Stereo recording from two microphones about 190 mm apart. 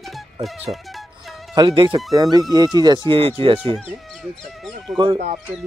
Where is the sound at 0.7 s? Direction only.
Centre (ahead or behind).